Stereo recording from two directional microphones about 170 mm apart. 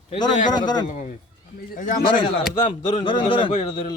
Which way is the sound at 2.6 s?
30° left (ahead or behind).